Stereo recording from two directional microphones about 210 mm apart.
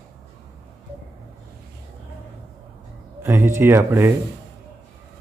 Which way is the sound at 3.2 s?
15° right (ahead or behind).